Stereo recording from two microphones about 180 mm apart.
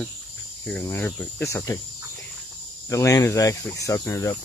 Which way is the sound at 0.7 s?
10° left (ahead or behind).